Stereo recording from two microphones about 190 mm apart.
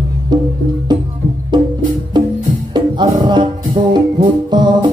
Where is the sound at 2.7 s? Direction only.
25° right (ahead or behind).